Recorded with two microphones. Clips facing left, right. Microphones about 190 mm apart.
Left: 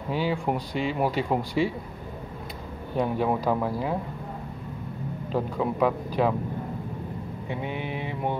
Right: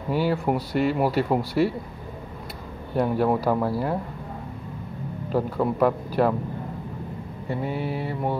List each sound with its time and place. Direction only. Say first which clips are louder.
0.1 s speech: right 3 dB; 5° right (ahead or behind)
3.0 s speech: right 3 dB; 5° right (ahead or behind)
5.3 s speech: right 3 dB; 5° right (ahead or behind)
7.4 s mantra: right 5 dB; 40° right (ahead or behind)